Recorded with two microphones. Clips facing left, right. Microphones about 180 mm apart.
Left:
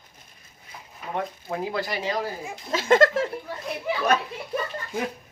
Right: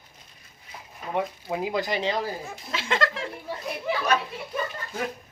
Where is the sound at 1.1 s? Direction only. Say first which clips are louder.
Right 2 dB; 15° right (ahead or behind).